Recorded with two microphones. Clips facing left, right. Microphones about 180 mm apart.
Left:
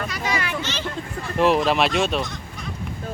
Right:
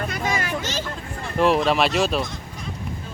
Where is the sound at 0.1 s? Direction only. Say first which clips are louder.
Right 1 dB; 50° right (ahead or behind).